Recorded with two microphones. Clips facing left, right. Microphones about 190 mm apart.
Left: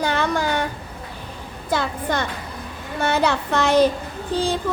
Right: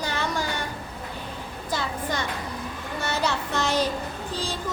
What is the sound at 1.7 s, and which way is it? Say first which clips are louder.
Music: left 6 dB; 60° left (ahead or behind).